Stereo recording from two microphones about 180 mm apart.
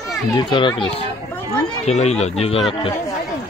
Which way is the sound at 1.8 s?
40° left (ahead or behind).